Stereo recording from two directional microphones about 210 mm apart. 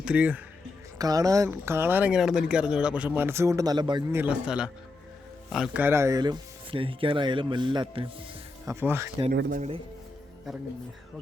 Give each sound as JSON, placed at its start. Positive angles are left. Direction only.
{"t": 0.0, "sound": "speech", "side_deg": -5}
{"t": 4.2, "sound": "a man's voice", "side_deg": -5}
{"t": 8.6, "sound": "speech", "side_deg": -10}
{"t": 9.3, "sound": "speech", "side_deg": -45}